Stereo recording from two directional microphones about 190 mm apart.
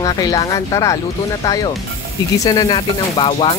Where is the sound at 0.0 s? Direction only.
20° left (ahead or behind).